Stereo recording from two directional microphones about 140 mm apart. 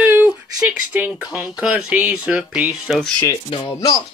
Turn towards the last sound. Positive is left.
turn(degrees=25)  # may be behind; listen again after turning